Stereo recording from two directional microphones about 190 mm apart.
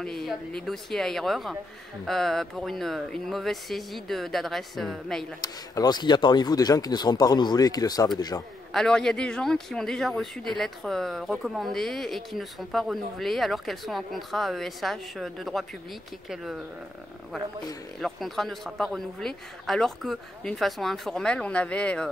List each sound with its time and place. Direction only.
0.0 s speech: centre (ahead or behind)
5.4 s speech: 20° left (ahead or behind)
8.7 s speech: 5° left (ahead or behind)
18.0 s speech: centre (ahead or behind)